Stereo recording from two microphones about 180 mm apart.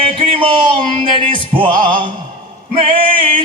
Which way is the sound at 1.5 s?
30° right (ahead or behind).